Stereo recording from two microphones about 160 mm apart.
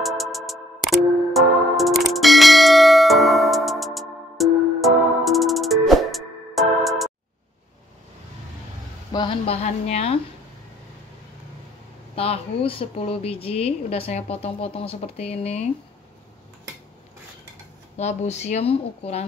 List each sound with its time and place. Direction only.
0.2 s music: centre (ahead or behind)
9.1 s a woman's voice: 30° left (ahead or behind)
12.2 s speech: 35° left (ahead or behind)
17.9 s speech: 45° left (ahead or behind)